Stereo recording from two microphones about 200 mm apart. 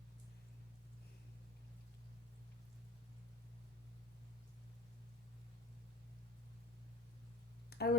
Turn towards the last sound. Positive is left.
turn(degrees=50)  # may be behind; listen again after turning